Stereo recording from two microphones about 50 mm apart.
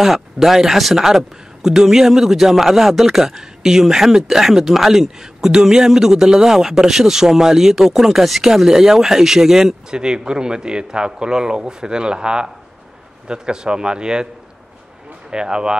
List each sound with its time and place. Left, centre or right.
0.0 s a man's voice: centre
15.2 s speech: centre